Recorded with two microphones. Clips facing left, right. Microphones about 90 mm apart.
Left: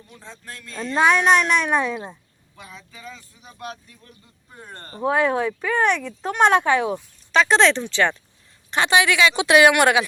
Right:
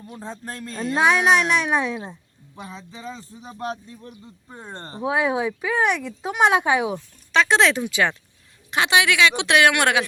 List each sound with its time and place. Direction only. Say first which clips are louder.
0.1 s speech: right 6 dB; 35° right (ahead or behind)
0.9 s speech: left 1 dB; centre (ahead or behind)
2.6 s speech: right 5 dB; 25° right (ahead or behind)
4.9 s speech: left 2 dB; 5° right (ahead or behind)
6.9 s speech: left 1 dB; centre (ahead or behind)